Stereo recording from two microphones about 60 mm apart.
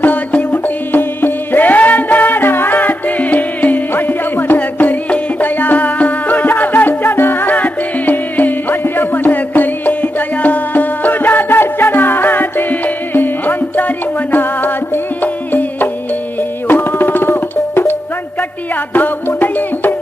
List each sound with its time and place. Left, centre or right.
0.0 s music: left
18.9 s music: left